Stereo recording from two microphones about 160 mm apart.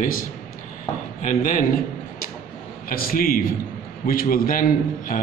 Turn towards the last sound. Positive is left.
turn(degrees=60)  # may be behind; listen again after turning